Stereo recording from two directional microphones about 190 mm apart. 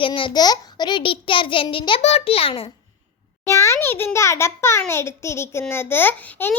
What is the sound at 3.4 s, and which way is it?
A child's voice, 15° left (ahead or behind).